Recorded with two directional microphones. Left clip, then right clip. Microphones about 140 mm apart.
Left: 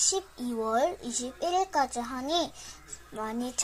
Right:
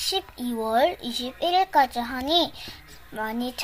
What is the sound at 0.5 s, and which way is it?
A child's voice, 25° left (ahead or behind).